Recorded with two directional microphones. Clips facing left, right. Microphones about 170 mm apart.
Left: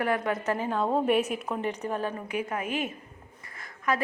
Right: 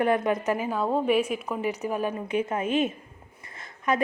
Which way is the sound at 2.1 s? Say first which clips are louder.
Right 4 dB; 25° right (ahead or behind).